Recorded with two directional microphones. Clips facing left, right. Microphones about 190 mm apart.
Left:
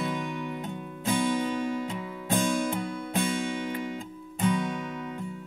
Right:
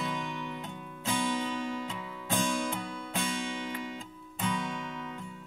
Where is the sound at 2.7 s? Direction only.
55° left (ahead or behind).